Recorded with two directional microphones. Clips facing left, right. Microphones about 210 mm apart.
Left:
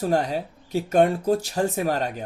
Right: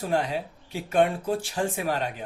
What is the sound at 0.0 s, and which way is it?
Speech, 40° left (ahead or behind).